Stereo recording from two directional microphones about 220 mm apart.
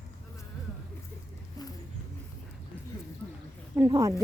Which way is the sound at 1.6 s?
15° left (ahead or behind).